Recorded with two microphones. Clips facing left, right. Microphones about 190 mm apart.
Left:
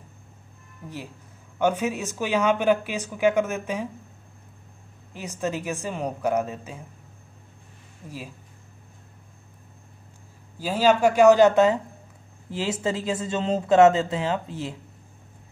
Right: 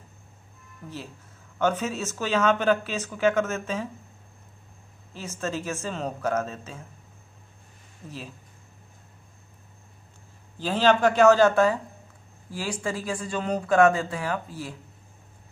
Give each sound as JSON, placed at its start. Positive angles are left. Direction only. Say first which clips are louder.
{"t": 1.6, "sound": "speech", "louder": "left 2 dB", "side_deg": 15}
{"t": 5.1, "sound": "speech", "louder": "left 2 dB", "side_deg": 15}
{"t": 10.6, "sound": "speech", "louder": "left 1 dB", "side_deg": 10}